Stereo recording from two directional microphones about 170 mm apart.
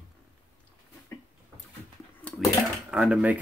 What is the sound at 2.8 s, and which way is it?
Speech, 5° right (ahead or behind).